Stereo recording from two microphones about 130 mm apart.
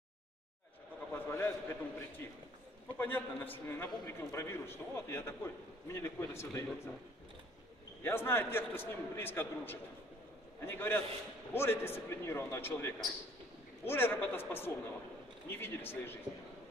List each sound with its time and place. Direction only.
1.1 s a sound: 15° left (ahead or behind)
3.0 s a man's voice: 15° left (ahead or behind)
8.0 s a man's voice: 15° left (ahead or behind)